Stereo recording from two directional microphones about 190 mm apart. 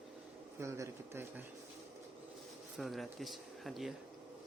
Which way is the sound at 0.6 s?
15° right (ahead or behind).